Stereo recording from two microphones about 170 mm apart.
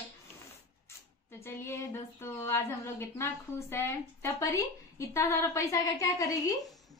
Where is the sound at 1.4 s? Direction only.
15° left (ahead or behind).